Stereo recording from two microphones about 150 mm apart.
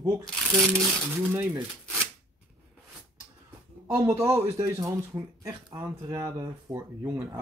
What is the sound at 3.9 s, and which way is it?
Speech, 20° right (ahead or behind).